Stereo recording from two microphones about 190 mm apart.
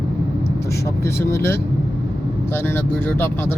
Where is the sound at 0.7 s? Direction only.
15° left (ahead or behind).